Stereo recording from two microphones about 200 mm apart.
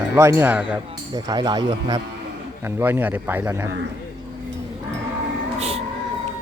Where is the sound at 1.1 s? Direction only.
20° right (ahead or behind).